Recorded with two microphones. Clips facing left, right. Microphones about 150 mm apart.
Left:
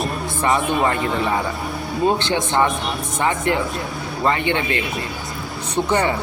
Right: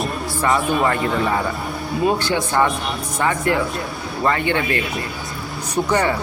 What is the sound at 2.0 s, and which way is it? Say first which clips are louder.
A man's voice: left 1 dB; 25° left (ahead or behind).